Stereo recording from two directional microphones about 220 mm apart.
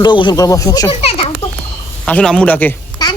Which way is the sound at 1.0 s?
25° left (ahead or behind).